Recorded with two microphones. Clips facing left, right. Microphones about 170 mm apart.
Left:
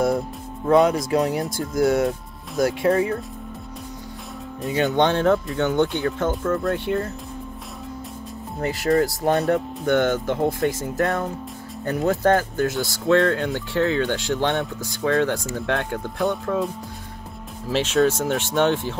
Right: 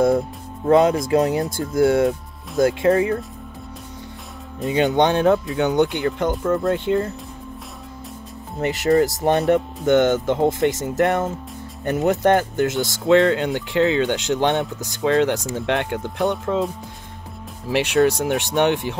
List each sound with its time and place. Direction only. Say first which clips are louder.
0.7 s speech: right 2 dB; 25° right (ahead or behind)
4.6 s speech: right 2 dB; 20° right (ahead or behind)
8.5 s speech: right 3 dB; 20° right (ahead or behind)
17.6 s speech: right 2 dB; 15° right (ahead or behind)